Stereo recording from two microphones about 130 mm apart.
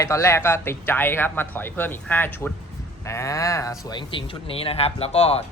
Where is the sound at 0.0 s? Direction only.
20° left (ahead or behind).